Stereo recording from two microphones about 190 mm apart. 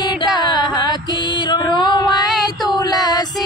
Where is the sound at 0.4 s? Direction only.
20° left (ahead or behind).